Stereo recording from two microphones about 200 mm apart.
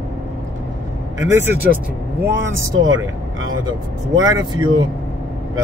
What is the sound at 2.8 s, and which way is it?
Speech, 80° right.